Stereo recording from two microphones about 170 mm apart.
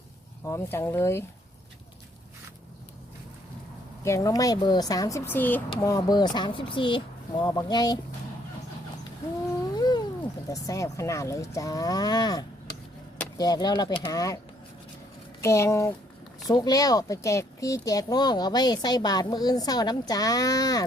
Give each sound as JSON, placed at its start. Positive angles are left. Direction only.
{"t": 0.4, "sound": "speech", "side_deg": 15}
{"t": 4.0, "sound": "speech", "side_deg": 20}
{"t": 9.7, "sound": "a sound", "side_deg": 25}
{"t": 10.5, "sound": "speech", "side_deg": 20}
{"t": 15.4, "sound": "speech", "side_deg": 15}